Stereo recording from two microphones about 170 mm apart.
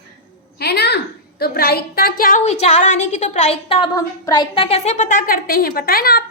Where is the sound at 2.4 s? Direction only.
40° left (ahead or behind).